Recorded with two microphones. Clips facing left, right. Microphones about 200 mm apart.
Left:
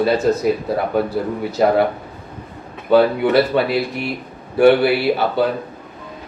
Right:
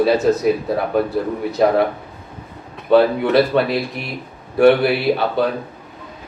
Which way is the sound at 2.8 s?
Centre (ahead or behind).